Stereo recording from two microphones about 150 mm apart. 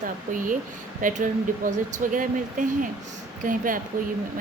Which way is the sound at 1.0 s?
60° right (ahead or behind).